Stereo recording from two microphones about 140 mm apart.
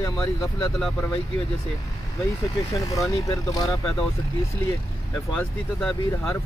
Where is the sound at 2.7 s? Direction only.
25° left (ahead or behind).